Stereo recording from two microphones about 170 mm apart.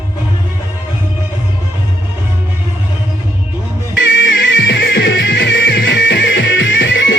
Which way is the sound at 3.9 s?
90° left.